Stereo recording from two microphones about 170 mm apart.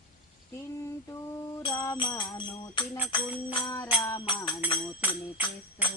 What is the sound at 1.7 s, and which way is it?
Music, 20° left (ahead or behind).